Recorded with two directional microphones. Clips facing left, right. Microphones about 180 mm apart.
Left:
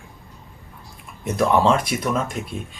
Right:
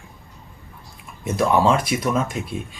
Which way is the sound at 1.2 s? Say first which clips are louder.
Even; 5° right (ahead or behind).